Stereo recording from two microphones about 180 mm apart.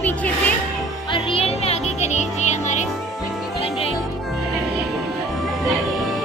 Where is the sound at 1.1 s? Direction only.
35° left (ahead or behind).